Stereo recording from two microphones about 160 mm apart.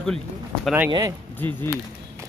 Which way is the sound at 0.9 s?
25° right (ahead or behind).